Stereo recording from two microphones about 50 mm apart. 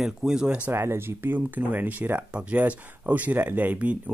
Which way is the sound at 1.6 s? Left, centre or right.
Right.